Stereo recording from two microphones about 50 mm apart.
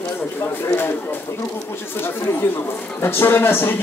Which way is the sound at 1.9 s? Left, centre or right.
Left.